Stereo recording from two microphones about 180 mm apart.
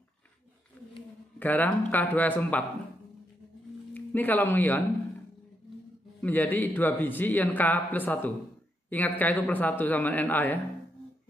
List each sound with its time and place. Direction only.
1.4 s a man's voice: 10° left (ahead or behind)
3.9 s speech: 10° left (ahead or behind)
6.2 s a man's voice: 10° left (ahead or behind)